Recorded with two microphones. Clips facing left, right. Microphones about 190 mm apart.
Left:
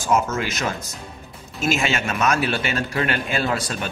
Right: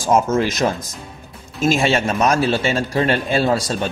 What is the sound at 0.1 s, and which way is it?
Speech, 35° right (ahead or behind).